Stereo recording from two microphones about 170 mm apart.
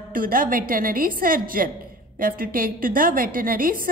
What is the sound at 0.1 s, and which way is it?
A woman's voice, 55° right (ahead or behind).